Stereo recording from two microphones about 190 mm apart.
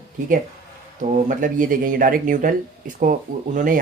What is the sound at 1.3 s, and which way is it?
Speech, 45° right (ahead or behind).